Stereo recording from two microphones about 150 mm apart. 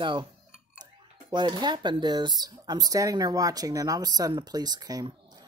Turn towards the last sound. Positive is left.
turn(degrees=-25)  # may be behind; listen again after turning